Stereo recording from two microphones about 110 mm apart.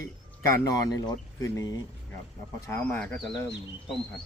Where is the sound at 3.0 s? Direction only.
5° left (ahead or behind).